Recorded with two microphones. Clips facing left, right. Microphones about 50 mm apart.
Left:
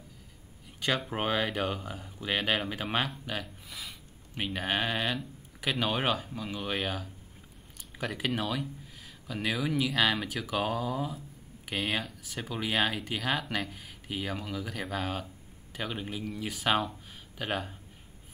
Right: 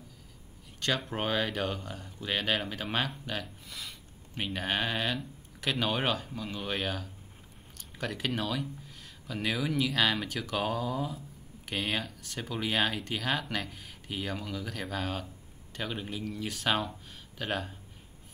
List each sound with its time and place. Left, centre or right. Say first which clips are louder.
0.7 s speech: left 1 dB; centre